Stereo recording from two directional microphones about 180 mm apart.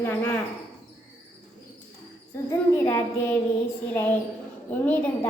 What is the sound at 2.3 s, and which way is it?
A woman's voice, 15° left (ahead or behind).